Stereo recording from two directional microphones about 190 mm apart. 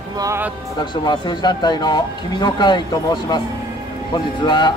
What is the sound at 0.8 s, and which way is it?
A man's voice, 20° left (ahead or behind).